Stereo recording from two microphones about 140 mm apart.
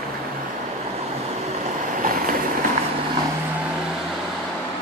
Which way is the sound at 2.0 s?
85° right.